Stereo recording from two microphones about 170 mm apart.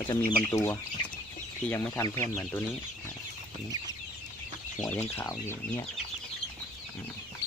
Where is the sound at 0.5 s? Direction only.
15° left (ahead or behind).